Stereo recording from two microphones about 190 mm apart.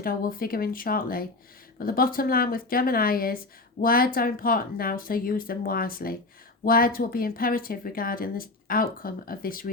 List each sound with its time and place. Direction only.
0.0 s speech: 50° left (ahead or behind)